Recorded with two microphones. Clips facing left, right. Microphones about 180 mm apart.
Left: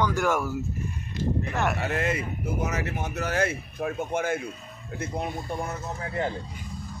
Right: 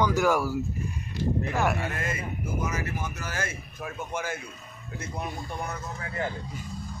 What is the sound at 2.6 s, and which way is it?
Speech, 65° left (ahead or behind).